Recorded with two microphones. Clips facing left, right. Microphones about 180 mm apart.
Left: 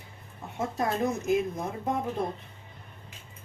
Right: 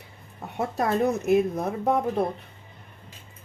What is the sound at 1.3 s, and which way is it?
Speech, 65° right (ahead or behind).